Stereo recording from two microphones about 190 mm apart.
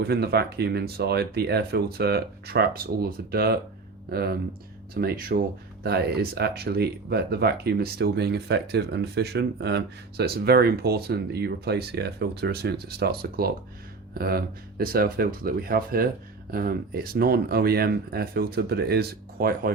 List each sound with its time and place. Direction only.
0.0 s speech: 55° right (ahead or behind)